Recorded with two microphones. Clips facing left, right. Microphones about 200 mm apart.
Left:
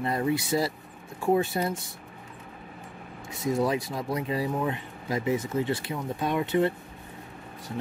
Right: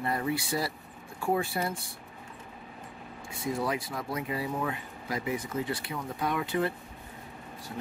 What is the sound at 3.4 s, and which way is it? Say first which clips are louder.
Speech: left 5 dB; 20° left (ahead or behind).